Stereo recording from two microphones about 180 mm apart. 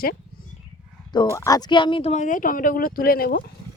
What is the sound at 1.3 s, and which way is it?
Speech, 20° left (ahead or behind).